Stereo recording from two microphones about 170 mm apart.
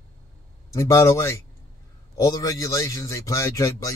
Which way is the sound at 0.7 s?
20° left (ahead or behind).